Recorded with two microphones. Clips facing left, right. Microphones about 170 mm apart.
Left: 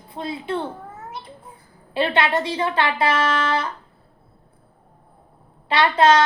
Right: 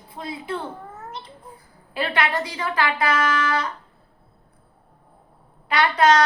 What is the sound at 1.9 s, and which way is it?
A woman's voice, 25° left (ahead or behind).